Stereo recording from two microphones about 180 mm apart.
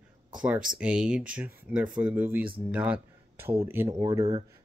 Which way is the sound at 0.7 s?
5° right (ahead or behind).